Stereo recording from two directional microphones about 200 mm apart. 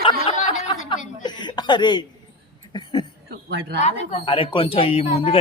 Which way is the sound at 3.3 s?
55° right (ahead or behind).